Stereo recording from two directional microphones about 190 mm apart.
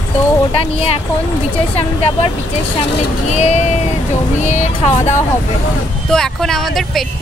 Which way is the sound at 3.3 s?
35° left (ahead or behind).